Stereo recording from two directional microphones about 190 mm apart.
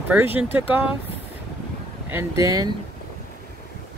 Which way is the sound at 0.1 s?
10° right (ahead or behind).